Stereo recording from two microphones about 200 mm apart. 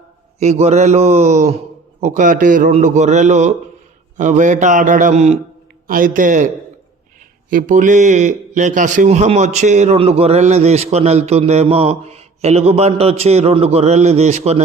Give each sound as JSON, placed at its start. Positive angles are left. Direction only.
{"t": 0.3, "sound": "a man's voice", "side_deg": -35}
{"t": 7.5, "sound": "a man's voice", "side_deg": -40}